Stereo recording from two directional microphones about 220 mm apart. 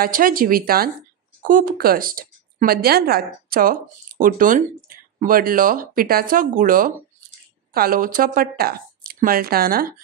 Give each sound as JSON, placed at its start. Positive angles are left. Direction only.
{"t": 0.0, "sound": "speech", "side_deg": -40}